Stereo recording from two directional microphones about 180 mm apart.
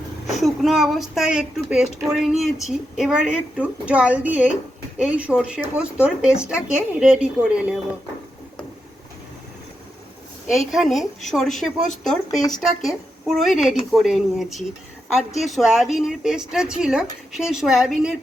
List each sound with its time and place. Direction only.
0.3 s a woman's voice: centre (ahead or behind)
10.7 s speech: centre (ahead or behind)